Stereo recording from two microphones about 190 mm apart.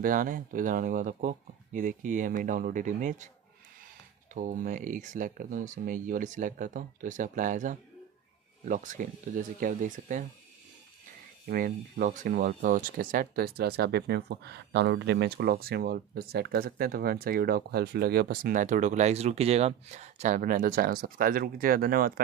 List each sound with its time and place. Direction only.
0.0 s speech: 45° right (ahead or behind)
4.3 s speech: 45° right (ahead or behind)
11.4 s speech: 50° right (ahead or behind)